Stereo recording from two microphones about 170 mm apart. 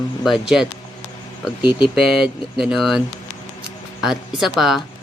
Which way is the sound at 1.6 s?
25° left (ahead or behind).